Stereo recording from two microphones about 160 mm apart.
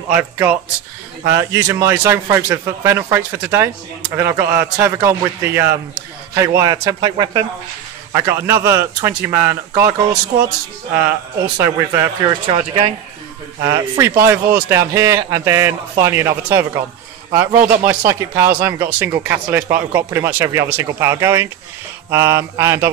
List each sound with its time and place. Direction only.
0.1 s a man's voice: 10° right (ahead or behind); by 7.4 s 25° right (ahead or behind)
8.1 s speech: 15° right (ahead or behind)
11.5 s a man's voice: 20° right (ahead or behind)
12.5 s speech: 35° right (ahead or behind)
13.6 s speech: 20° right (ahead or behind)